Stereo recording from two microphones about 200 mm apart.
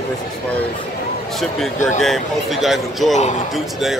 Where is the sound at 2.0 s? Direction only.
Centre (ahead or behind).